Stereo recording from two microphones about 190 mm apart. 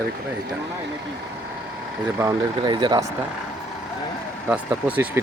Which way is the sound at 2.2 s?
20° right (ahead or behind).